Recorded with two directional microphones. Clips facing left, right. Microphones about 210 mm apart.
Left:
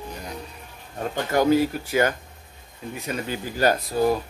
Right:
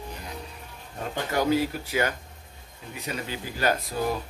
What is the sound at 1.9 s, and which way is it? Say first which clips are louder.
Speech: left 5 dB; 50° left (ahead or behind).